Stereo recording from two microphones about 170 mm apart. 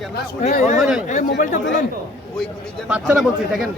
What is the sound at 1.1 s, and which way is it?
Speech, 45° left (ahead or behind).